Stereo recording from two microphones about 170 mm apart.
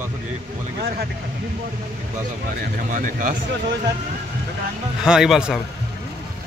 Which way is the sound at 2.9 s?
50° right (ahead or behind).